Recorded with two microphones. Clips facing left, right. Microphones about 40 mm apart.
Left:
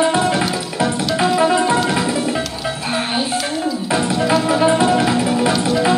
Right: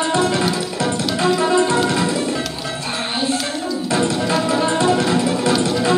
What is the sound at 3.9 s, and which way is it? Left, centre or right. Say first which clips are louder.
Music: left 2 dB; centre.